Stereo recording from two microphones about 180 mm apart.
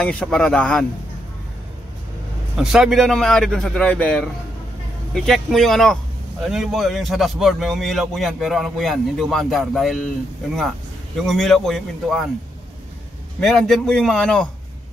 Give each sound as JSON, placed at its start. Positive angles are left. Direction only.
{"t": 0.0, "sound": "speech", "side_deg": 5}
{"t": 2.5, "sound": "speech", "side_deg": 0}
{"t": 11.2, "sound": "speech", "side_deg": 0}
{"t": 13.4, "sound": "speech", "side_deg": 0}